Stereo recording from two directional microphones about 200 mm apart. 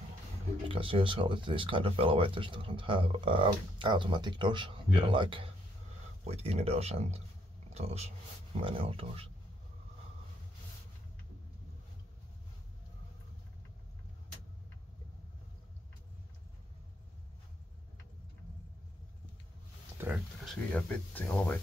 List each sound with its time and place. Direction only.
0.7 s speech: 25° right (ahead or behind)
20.0 s a sound: 10° right (ahead or behind)
20.4 s speech: 5° left (ahead or behind)